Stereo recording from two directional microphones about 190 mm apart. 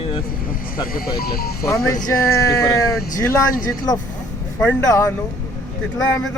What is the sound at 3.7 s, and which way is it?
Speech, 20° left (ahead or behind).